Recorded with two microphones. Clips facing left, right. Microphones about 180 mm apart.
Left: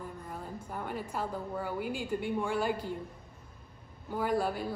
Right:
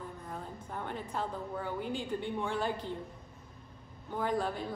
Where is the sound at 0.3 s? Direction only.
5° left (ahead or behind).